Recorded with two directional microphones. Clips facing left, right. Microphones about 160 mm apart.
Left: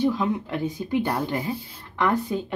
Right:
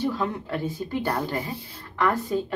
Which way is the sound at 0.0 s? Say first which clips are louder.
Left 4 dB; 15° left (ahead or behind).